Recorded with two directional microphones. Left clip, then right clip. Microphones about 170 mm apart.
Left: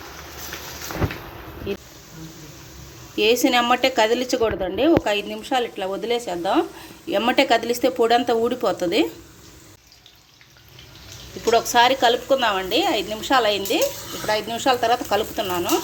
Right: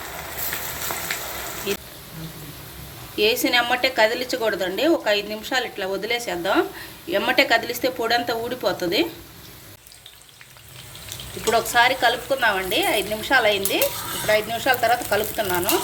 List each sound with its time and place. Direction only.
1.7 s insect: 35° left (ahead or behind)
3.2 s a woman's voice: 45° left (ahead or behind)
11.5 s speech: 40° left (ahead or behind)